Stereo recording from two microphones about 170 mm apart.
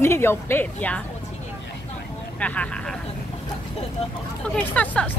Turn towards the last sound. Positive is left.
turn(degrees=10)  # may be behind; listen again after turning